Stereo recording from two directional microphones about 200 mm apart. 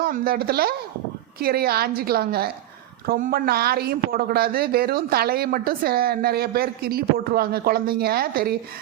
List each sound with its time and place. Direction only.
0.0 s a woman's voice: 50° right (ahead or behind)